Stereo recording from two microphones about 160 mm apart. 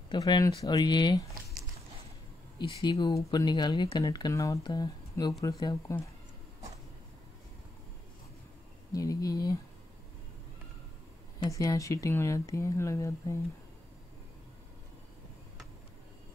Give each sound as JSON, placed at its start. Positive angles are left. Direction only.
{"t": 0.1, "sound": "speech", "side_deg": 25}
{"t": 2.8, "sound": "speech", "side_deg": 30}
{"t": 8.9, "sound": "speech", "side_deg": 20}
{"t": 11.3, "sound": "speech", "side_deg": 25}